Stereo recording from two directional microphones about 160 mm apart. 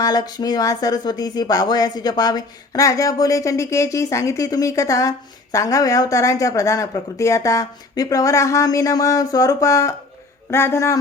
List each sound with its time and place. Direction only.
0.0 s speech: 25° left (ahead or behind)